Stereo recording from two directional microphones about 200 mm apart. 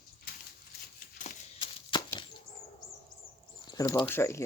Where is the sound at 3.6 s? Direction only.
20° left (ahead or behind).